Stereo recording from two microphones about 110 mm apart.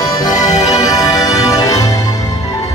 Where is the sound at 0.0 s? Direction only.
35° left (ahead or behind).